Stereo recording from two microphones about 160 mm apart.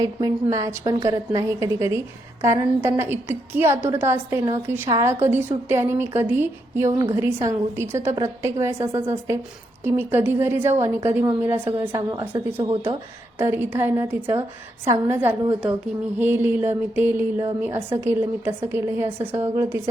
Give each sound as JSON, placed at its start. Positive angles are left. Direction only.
{"t": 0.0, "sound": "a woman's voice", "side_deg": -20}
{"t": 12.5, "sound": "speech", "side_deg": -35}
{"t": 13.4, "sound": "speech", "side_deg": -15}